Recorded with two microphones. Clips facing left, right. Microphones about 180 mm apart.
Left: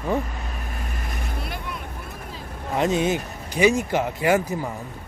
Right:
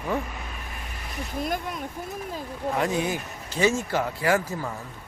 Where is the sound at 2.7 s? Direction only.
20° left (ahead or behind).